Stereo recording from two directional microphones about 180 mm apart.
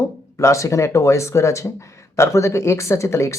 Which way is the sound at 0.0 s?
15° left (ahead or behind).